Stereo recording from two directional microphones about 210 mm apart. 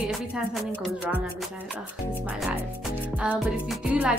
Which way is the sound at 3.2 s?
5° right (ahead or behind).